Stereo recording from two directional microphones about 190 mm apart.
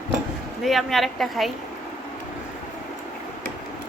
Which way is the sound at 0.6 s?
Centre (ahead or behind).